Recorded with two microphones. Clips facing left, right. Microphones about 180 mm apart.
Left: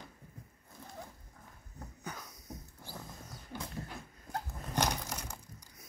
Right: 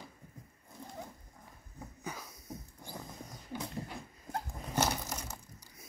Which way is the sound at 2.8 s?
15° right (ahead or behind).